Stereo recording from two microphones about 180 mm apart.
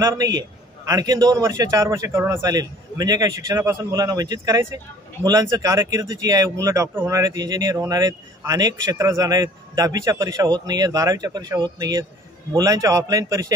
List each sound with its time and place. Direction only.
0.0 s speech: 20° right (ahead or behind)